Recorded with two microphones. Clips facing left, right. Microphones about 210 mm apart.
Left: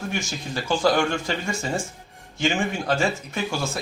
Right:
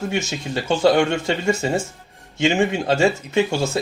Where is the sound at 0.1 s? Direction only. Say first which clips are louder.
Right 5 dB; 25° right (ahead or behind).